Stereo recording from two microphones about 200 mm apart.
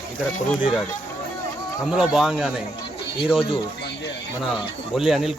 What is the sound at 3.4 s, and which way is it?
Speech, 25° left (ahead or behind).